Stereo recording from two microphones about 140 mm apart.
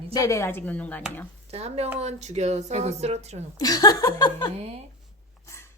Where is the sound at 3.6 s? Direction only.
30° left (ahead or behind).